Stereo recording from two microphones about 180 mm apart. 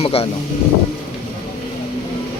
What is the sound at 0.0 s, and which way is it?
Speech, 35° left (ahead or behind).